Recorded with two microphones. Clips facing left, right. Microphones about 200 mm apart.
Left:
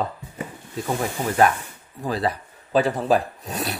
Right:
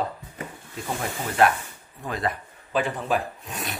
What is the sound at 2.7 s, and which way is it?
Speech, 40° left (ahead or behind).